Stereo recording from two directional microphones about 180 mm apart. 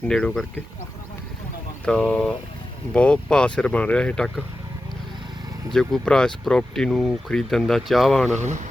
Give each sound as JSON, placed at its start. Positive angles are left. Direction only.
{"t": 0.0, "sound": "speech", "side_deg": 5}
{"t": 1.8, "sound": "speech", "side_deg": 5}
{"t": 5.7, "sound": "speech", "side_deg": 5}
{"t": 8.4, "sound": "speech", "side_deg": -40}